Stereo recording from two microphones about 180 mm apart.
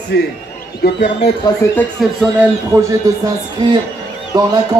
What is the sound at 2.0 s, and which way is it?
Speech, centre (ahead or behind).